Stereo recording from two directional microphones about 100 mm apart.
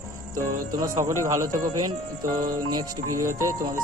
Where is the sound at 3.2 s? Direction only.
30° right (ahead or behind).